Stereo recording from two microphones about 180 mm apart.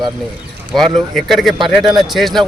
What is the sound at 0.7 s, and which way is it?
Speech, centre (ahead or behind).